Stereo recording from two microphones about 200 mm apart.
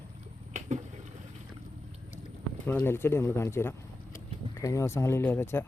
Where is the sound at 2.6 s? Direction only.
10° left (ahead or behind).